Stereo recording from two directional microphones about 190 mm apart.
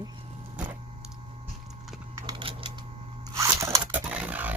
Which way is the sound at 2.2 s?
20° right (ahead or behind).